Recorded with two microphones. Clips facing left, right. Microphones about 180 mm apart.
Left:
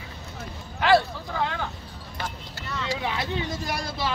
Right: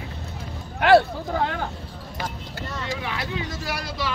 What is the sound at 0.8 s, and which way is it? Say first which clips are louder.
Speech: right 4 dB; 55° right (ahead or behind).